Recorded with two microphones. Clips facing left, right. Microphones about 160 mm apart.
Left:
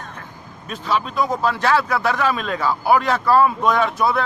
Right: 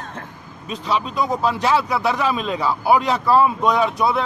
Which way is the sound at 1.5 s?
20° right (ahead or behind).